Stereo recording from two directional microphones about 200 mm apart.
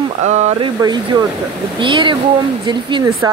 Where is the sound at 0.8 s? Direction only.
20° right (ahead or behind).